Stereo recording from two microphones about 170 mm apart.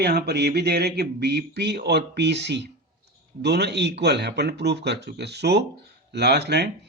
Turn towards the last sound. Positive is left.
turn(degrees=-75)  # may be behind; listen again after turning